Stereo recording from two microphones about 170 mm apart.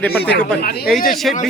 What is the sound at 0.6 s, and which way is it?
Speech, 65° left (ahead or behind).